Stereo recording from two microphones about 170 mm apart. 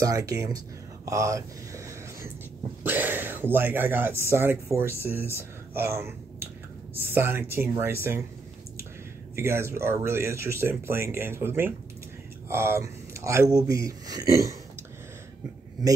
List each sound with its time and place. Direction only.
0.0 s speech: 20° right (ahead or behind)
9.3 s speech: 15° right (ahead or behind)